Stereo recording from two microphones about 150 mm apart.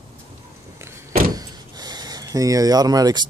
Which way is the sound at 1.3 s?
25° right (ahead or behind).